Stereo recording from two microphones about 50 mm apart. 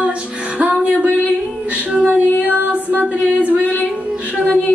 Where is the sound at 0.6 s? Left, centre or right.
Right.